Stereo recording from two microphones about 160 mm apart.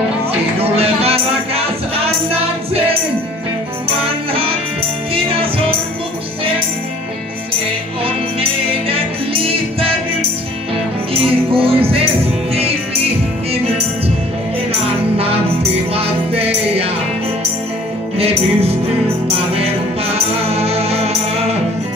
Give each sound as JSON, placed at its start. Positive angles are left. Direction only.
{"t": 0.6, "sound": "music", "side_deg": -40}
{"t": 4.3, "sound": "music", "side_deg": -35}
{"t": 8.0, "sound": "music", "side_deg": -35}
{"t": 11.2, "sound": "music", "side_deg": -35}
{"t": 15.9, "sound": "music", "side_deg": -40}
{"t": 18.1, "sound": "music", "side_deg": -40}